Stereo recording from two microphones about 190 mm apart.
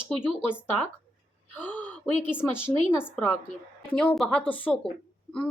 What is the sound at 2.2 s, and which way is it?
Speech, 5° right (ahead or behind).